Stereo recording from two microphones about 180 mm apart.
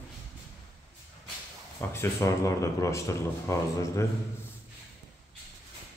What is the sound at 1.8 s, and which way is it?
Speech, 15° left (ahead or behind).